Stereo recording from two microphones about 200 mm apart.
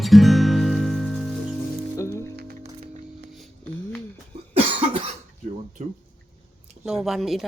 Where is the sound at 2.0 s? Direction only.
15° left (ahead or behind).